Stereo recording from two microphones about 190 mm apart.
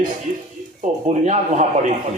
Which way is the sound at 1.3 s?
40° right (ahead or behind).